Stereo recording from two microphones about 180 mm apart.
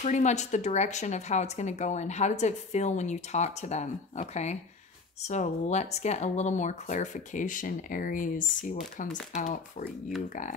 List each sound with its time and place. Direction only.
0.0 s speech: 40° left (ahead or behind)